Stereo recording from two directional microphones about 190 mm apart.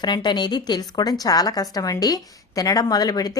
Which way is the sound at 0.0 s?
25° left (ahead or behind).